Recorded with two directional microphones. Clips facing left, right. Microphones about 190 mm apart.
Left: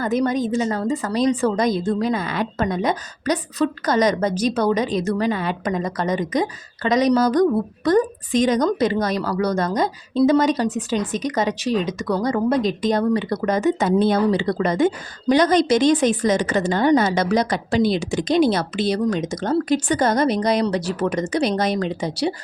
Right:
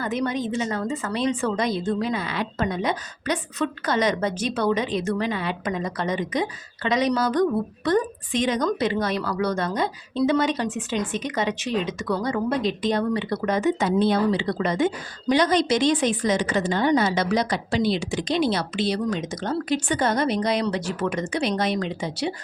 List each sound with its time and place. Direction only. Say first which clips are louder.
0.0 s a woman's voice: left 5 dB; 40° left (ahead or behind)